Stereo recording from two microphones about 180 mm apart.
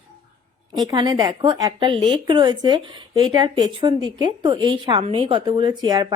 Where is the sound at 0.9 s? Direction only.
25° right (ahead or behind).